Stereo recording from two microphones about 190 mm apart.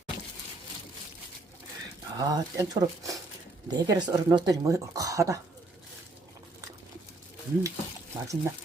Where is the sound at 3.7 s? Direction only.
20° right (ahead or behind).